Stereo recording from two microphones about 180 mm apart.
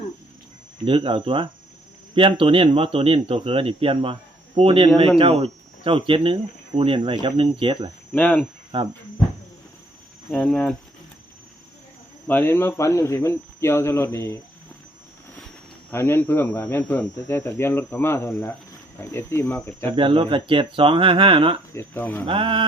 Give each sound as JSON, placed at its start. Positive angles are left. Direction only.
{"t": 0.9, "sound": "speech", "side_deg": -30}
{"t": 8.1, "sound": "speech", "side_deg": 10}
{"t": 8.7, "sound": "speech", "side_deg": -30}
{"t": 10.2, "sound": "speech", "side_deg": 5}
{"t": 12.3, "sound": "speech", "side_deg": 10}
{"t": 15.9, "sound": "speech", "side_deg": 10}
{"t": 20.0, "sound": "speech", "side_deg": -30}
{"t": 21.8, "sound": "speech", "side_deg": 10}
{"t": 22.3, "sound": "speech", "side_deg": -30}